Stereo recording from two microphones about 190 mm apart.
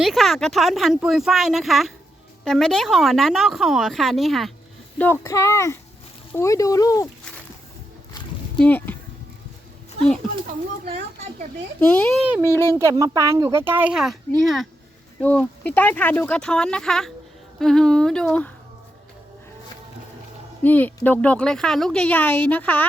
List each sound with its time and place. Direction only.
0.0 s speech: centre (ahead or behind)
4.9 s speech: 10° left (ahead or behind)
8.5 s speech: 10° left (ahead or behind)
11.8 s speech: 5° left (ahead or behind)
12.3 s speech: 15° right (ahead or behind); by 18.5 s 5° left (ahead or behind)
20.6 s speech: 10° left (ahead or behind)